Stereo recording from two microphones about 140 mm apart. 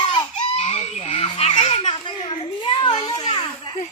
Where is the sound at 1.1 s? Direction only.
35° left (ahead or behind).